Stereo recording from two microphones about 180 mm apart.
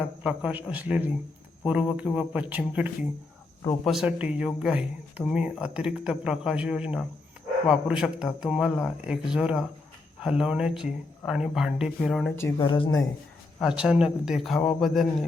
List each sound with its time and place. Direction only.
0.2 s speech: 5° right (ahead or behind)
12.5 s speech: 30° left (ahead or behind)
13.6 s speech: 5° right (ahead or behind)